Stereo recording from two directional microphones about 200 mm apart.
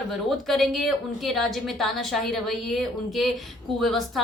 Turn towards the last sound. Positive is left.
turn(degrees=0)  # may be behind; listen again after turning